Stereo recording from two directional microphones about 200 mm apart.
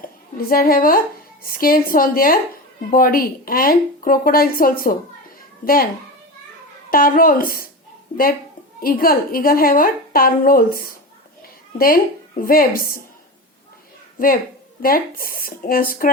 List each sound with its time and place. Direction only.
0.3 s a woman's voice: 45° left (ahead or behind)
6.9 s a woman's voice: 45° left (ahead or behind)
8.8 s a woman's voice: 45° left (ahead or behind)
12.4 s a woman's voice: 45° left (ahead or behind)
14.2 s a woman's voice: 45° left (ahead or behind)